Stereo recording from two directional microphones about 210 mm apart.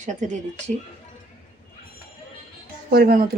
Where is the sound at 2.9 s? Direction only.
45° right (ahead or behind).